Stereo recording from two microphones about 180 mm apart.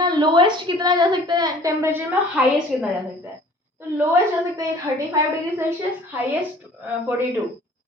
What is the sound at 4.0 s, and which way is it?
Speech, 15° right (ahead or behind).